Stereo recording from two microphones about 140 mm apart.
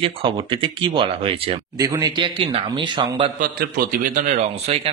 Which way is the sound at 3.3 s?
75° right (ahead or behind).